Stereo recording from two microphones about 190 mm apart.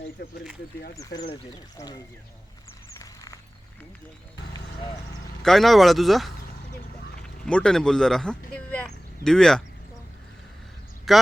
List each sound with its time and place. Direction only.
0.2 s speech: 65° left (ahead or behind)
1.7 s speech: 20° left (ahead or behind)
5.4 s speech: centre (ahead or behind)
11.1 s speech: centre (ahead or behind)